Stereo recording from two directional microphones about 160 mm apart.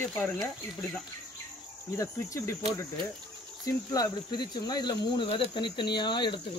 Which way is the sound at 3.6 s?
25° left (ahead or behind).